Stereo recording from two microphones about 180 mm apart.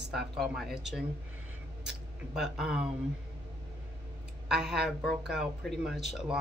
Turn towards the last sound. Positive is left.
turn(degrees=0)  # may be behind; listen again after turning